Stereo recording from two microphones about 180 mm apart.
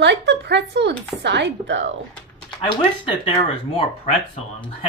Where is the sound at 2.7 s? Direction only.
30° left (ahead or behind).